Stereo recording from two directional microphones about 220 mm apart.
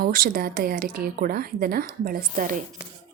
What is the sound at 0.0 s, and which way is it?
A woman's voice, 40° right (ahead or behind).